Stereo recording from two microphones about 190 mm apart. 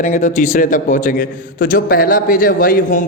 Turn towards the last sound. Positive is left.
turn(degrees=45)  # may be behind; listen again after turning